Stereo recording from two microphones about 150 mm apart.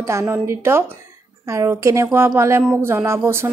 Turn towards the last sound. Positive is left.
turn(degrees=-15)  # may be behind; listen again after turning